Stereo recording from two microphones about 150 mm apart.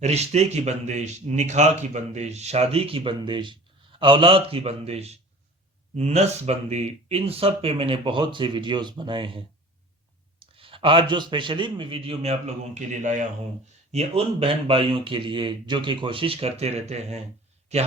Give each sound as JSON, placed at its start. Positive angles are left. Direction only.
{"t": 0.0, "sound": "speech", "side_deg": -45}
{"t": 10.4, "sound": "speech", "side_deg": -35}
{"t": 13.9, "sound": "speech", "side_deg": -40}